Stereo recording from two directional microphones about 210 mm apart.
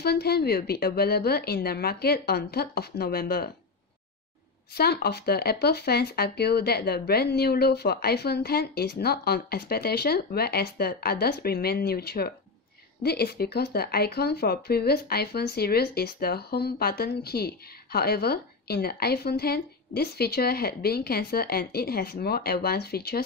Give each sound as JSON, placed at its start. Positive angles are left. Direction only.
{"t": 0.0, "sound": "speech", "side_deg": 50}
{"t": 4.7, "sound": "speech", "side_deg": 50}